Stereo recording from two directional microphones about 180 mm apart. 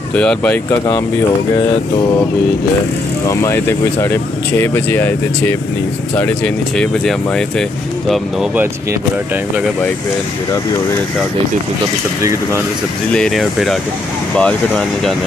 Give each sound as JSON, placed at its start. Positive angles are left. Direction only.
{"t": 0.1, "sound": "speech", "side_deg": 5}
{"t": 3.3, "sound": "speech", "side_deg": 15}
{"t": 13.1, "sound": "speech", "side_deg": 0}